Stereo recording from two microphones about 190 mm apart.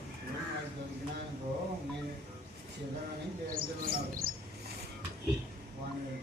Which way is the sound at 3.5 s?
50° right (ahead or behind).